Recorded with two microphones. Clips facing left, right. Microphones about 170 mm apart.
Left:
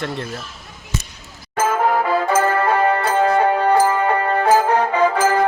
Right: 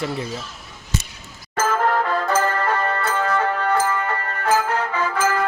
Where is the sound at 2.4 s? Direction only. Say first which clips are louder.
Left 4 dB; 20° left (ahead or behind).